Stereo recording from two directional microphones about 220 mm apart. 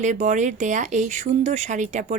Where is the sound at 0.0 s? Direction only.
35° right (ahead or behind).